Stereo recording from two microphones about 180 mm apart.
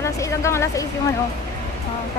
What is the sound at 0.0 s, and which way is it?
Speech, 15° left (ahead or behind).